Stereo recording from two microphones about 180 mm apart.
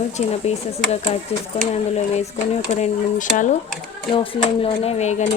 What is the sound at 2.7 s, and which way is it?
Speech, 40° left (ahead or behind).